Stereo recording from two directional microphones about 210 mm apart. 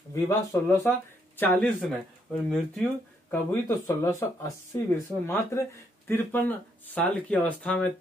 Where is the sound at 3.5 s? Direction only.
15° left (ahead or behind).